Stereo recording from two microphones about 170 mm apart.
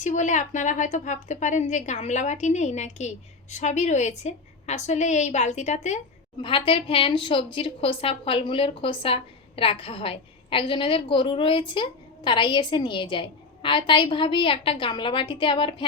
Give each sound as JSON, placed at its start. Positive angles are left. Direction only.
{"t": 0.0, "sound": "a woman's voice", "side_deg": 45}
{"t": 6.4, "sound": "speech", "side_deg": 30}